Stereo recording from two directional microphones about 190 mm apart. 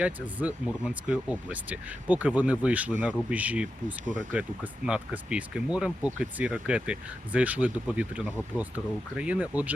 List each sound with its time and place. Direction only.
0.0 s speech: 5° right (ahead or behind)
4.0 s speech: 40° right (ahead or behind)
4.3 s speech: 5° right (ahead or behind)